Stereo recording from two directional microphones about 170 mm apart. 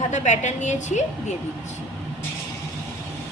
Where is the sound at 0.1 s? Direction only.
45° left (ahead or behind).